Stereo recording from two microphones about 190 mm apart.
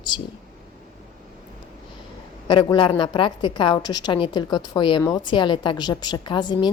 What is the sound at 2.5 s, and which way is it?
A woman's voice, 25° left (ahead or behind).